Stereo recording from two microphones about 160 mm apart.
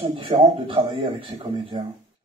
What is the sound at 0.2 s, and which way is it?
Speech, 35° right (ahead or behind).